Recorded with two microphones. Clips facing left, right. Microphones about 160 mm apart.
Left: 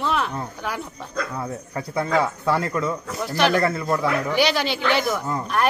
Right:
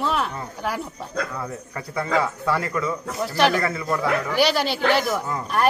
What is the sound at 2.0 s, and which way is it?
Speech, 20° left (ahead or behind).